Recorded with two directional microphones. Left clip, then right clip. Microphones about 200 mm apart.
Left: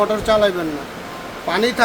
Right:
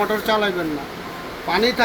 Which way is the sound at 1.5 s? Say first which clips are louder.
Even; 35° left (ahead or behind).